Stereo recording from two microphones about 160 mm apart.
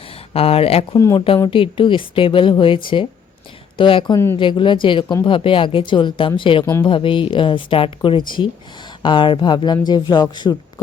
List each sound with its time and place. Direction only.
0.1 s speech: 40° left (ahead or behind)
0.9 s speech: 20° left (ahead or behind)
1.5 s speech: 35° left (ahead or behind)